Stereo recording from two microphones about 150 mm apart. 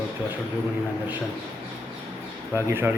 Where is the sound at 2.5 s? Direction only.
15° right (ahead or behind).